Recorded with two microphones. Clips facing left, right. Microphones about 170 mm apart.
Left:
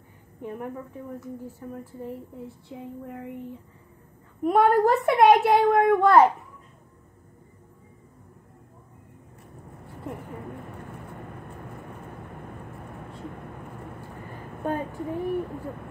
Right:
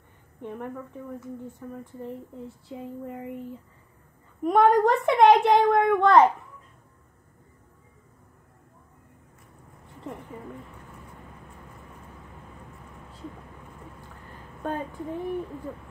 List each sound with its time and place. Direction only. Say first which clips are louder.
0.4 s a woman's voice: left 1 dB; 5° left (ahead or behind)
11.1 s vehicle: left 7 dB; 60° left (ahead or behind)
15.0 s speech: left 3 dB; 60° left (ahead or behind)